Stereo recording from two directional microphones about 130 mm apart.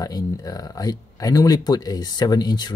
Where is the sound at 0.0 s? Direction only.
30° left (ahead or behind).